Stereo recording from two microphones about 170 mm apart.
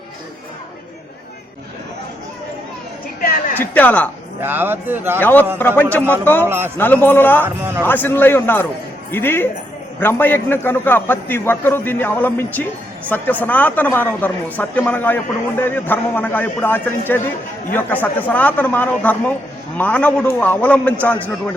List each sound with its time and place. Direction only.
3.2 s a sound: 55° left (ahead or behind)
3.6 s a man's voice: 10° left (ahead or behind)
4.4 s a man's voice: 10° right (ahead or behind)
5.2 s a man's voice: 10° left (ahead or behind)
6.0 s a man's voice: 15° right (ahead or behind)
6.7 s a man's voice: 10° left (ahead or behind)
7.4 s a man's voice: 15° right (ahead or behind)
7.8 s a man's voice: 10° left (ahead or behind)